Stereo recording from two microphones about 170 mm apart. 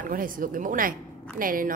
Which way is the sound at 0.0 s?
55° right (ahead or behind).